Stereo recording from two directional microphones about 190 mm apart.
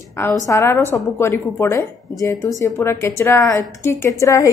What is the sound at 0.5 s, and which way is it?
A woman's voice, 15° left (ahead or behind).